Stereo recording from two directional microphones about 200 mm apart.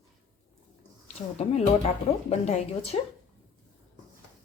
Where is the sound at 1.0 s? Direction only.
30° left (ahead or behind).